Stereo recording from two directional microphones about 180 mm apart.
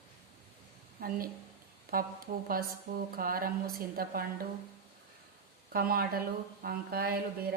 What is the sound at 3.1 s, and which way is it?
Speech, 55° right (ahead or behind).